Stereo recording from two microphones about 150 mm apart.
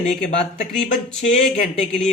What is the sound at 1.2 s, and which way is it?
Speech, 50° left (ahead or behind).